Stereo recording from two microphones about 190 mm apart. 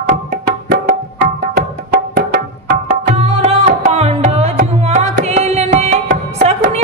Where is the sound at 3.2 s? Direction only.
35° right (ahead or behind).